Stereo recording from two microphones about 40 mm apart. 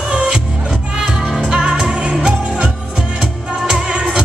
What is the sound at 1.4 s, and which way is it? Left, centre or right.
Music, right.